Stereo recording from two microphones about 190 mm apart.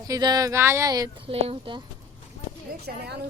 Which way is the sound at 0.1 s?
20° right (ahead or behind).